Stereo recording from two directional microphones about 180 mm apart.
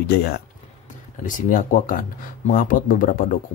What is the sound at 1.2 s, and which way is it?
Speech, 45° left (ahead or behind).